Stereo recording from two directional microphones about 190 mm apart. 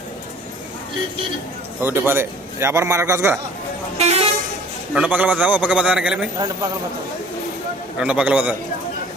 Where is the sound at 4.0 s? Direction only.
35° right (ahead or behind).